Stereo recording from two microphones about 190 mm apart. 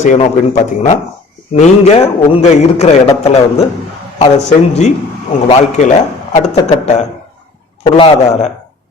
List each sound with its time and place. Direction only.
0.0 s a man's voice: 40° left (ahead or behind)